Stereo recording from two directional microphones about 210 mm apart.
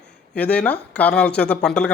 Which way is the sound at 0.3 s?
5° left (ahead or behind).